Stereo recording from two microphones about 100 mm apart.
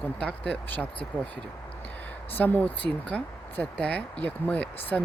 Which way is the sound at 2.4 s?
15° left (ahead or behind).